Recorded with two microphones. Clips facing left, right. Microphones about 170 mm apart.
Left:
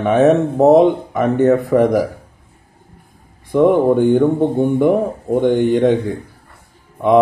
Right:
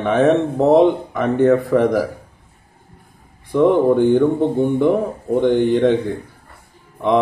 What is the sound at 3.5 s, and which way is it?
A man's voice, 10° left (ahead or behind).